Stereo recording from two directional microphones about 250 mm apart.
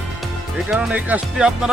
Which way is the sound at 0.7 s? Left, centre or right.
Centre.